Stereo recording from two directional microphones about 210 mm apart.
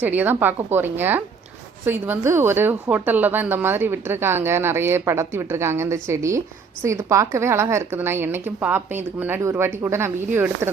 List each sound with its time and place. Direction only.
0.0 s a woman's voice: 10° right (ahead or behind)